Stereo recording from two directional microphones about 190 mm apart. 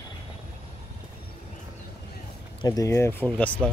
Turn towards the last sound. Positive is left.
turn(degrees=5)  # may be behind; listen again after turning